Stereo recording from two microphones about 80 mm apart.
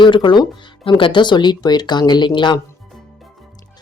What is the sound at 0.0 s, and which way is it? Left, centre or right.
Speech, left.